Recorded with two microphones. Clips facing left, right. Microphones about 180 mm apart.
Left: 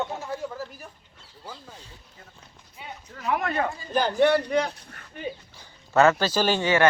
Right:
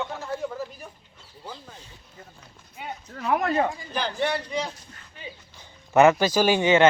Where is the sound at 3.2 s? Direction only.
35° right (ahead or behind).